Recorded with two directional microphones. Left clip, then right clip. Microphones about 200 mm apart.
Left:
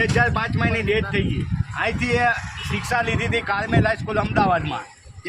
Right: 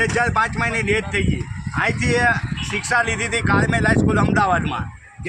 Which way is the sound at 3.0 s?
20° left (ahead or behind).